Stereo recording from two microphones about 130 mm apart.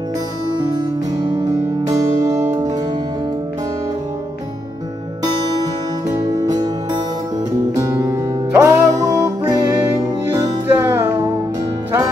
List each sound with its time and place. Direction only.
0.7 s music: 30° right (ahead or behind)
6.5 s music: 30° right (ahead or behind)
10.2 s music: 20° right (ahead or behind)